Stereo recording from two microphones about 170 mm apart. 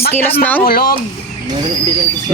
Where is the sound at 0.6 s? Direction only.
60° left (ahead or behind).